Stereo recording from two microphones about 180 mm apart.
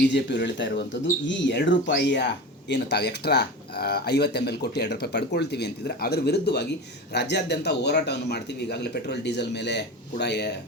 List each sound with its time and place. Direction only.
0.1 s speech: 75° left (ahead or behind)